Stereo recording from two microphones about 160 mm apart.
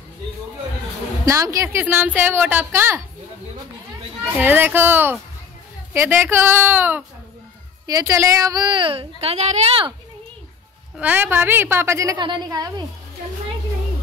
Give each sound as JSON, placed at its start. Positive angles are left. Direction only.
{"t": 1.2, "sound": "a woman's voice", "side_deg": -20}
{"t": 4.4, "sound": "a woman's voice", "side_deg": -10}
{"t": 11.0, "sound": "a woman's voice", "side_deg": -10}